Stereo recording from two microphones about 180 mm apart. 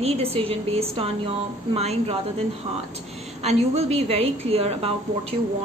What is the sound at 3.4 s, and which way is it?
A woman's voice, 35° right (ahead or behind).